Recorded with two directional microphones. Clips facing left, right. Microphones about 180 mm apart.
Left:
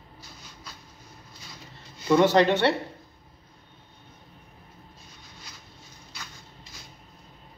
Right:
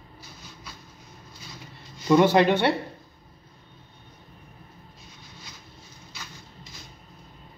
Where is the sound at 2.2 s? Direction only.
10° right (ahead or behind).